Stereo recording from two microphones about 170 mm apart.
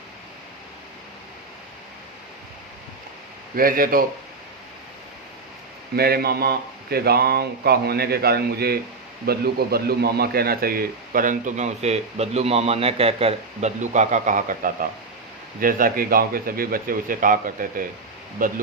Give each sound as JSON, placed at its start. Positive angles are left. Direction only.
{"t": 3.5, "sound": "speech", "side_deg": -55}
{"t": 6.0, "sound": "a man's voice", "side_deg": -65}